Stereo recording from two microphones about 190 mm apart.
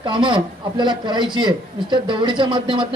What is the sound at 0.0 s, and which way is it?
A man's voice, 25° right (ahead or behind).